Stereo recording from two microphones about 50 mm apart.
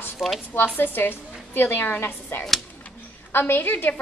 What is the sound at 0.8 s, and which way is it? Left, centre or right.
A woman's voice, left.